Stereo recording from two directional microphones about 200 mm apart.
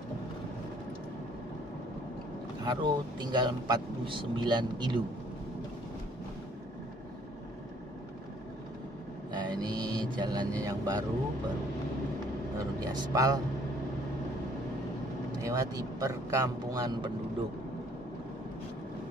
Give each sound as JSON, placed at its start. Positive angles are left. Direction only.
{"t": 2.6, "sound": "speech", "side_deg": -20}
{"t": 9.3, "sound": "vehicle", "side_deg": -20}
{"t": 12.5, "sound": "speech", "side_deg": -20}
{"t": 15.4, "sound": "speech", "side_deg": -15}